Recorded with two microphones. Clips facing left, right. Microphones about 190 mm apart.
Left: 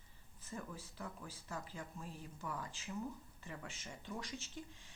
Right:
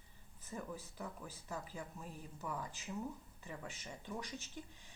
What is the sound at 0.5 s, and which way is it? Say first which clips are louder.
Speech: right 2 dB; 10° right (ahead or behind).